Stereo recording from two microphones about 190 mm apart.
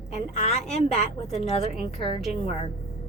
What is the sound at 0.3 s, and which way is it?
Speech, 35° left (ahead or behind).